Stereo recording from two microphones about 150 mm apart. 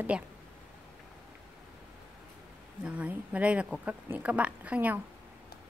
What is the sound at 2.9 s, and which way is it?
Speech, 10° right (ahead or behind).